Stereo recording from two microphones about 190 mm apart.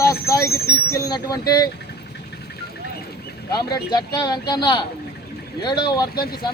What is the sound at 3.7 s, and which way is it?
Speech, 20° left (ahead or behind).